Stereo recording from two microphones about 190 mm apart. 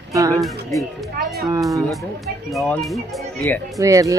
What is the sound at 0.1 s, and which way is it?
Music, 15° right (ahead or behind).